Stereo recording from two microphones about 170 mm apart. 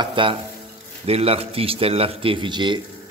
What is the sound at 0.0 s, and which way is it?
Speech, 30° right (ahead or behind).